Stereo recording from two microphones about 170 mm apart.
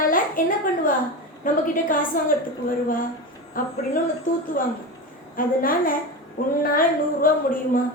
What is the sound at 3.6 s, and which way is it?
Speech, 55° left (ahead or behind).